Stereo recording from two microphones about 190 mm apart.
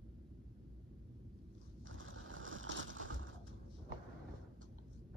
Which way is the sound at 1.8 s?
90° right.